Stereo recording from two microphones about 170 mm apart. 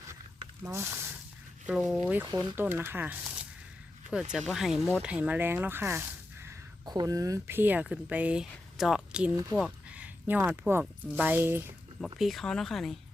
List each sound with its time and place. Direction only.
0.6 s speech: 15° right (ahead or behind)
1.6 s speech: 5° right (ahead or behind)
5.0 s a sound: 5° right (ahead or behind)
6.9 s speech: 20° right (ahead or behind); by 9.3 s 5° right (ahead or behind)
9.3 s speech: 20° right (ahead or behind)
9.6 s speech: 5° right (ahead or behind)
12.2 s speech: centre (ahead or behind)